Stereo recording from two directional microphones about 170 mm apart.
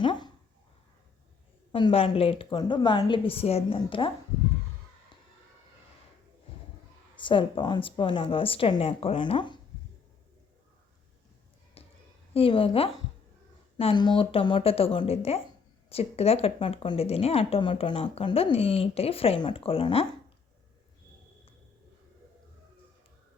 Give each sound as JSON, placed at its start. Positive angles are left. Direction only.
{"t": 0.0, "sound": "a sound", "side_deg": 25}
{"t": 1.7, "sound": "speech", "side_deg": 30}
{"t": 7.2, "sound": "speech", "side_deg": 30}
{"t": 12.3, "sound": "speech", "side_deg": 35}